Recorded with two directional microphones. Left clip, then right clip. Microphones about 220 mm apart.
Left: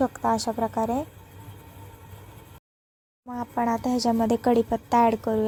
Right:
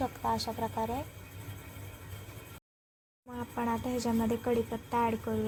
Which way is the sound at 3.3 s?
35° left (ahead or behind).